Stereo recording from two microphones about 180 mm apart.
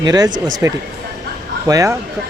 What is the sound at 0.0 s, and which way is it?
Speech, 20° right (ahead or behind).